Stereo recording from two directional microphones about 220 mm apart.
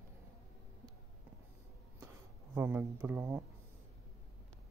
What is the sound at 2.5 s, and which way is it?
Speech, 10° right (ahead or behind).